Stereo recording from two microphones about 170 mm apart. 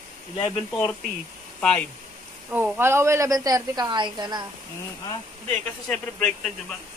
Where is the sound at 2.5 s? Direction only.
10° right (ahead or behind).